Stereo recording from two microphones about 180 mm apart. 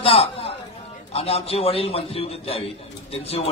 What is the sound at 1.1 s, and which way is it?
A man's voice, 35° left (ahead or behind).